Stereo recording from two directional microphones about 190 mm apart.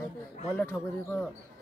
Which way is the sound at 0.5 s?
10° left (ahead or behind).